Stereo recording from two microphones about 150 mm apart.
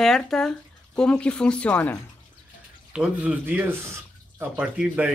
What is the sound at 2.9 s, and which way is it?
Speech, 5° right (ahead or behind).